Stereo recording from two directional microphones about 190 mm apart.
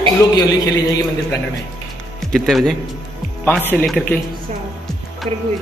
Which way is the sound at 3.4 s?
10° left (ahead or behind).